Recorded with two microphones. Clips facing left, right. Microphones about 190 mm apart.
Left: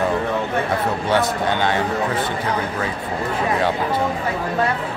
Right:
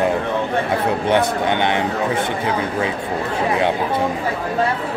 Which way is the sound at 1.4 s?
20° right (ahead or behind).